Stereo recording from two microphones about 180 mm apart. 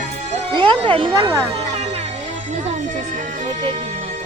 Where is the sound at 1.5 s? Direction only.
35° right (ahead or behind).